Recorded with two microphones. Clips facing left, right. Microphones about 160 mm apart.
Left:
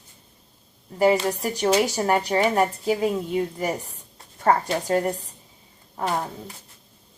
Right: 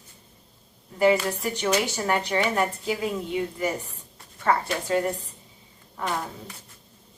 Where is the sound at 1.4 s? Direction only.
40° left (ahead or behind).